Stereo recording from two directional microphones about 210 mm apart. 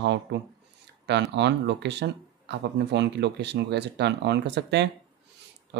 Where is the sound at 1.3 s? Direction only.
55° right (ahead or behind).